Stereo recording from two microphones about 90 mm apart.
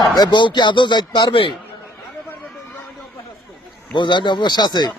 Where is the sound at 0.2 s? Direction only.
55° left (ahead or behind).